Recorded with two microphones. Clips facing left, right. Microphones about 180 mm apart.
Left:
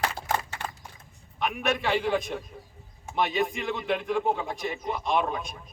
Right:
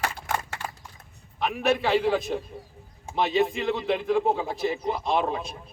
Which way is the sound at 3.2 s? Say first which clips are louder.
Right 3 dB; 30° right (ahead or behind).